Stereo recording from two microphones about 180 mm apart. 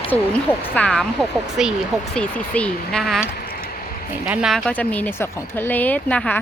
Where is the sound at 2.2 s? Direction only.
5° left (ahead or behind).